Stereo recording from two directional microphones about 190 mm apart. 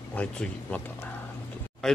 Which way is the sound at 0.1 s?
5° left (ahead or behind).